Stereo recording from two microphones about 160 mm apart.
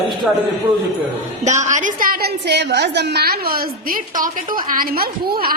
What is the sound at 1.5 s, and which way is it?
A woman's voice, 50° right (ahead or behind).